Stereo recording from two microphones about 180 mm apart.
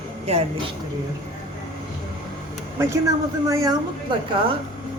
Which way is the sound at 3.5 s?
20° right (ahead or behind).